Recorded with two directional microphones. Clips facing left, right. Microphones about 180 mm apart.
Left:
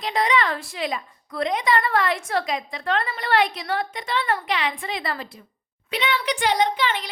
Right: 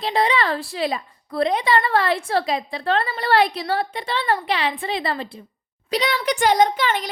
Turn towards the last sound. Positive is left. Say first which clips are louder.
# right 4 dB
turn(degrees=-45)  # may be behind; listen again after turning